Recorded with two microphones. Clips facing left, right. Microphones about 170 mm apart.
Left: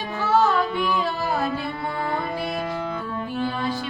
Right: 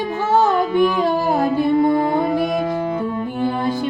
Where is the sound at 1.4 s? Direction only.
20° right (ahead or behind).